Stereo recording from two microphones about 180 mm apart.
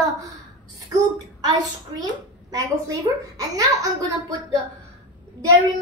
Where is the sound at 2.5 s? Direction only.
20° right (ahead or behind).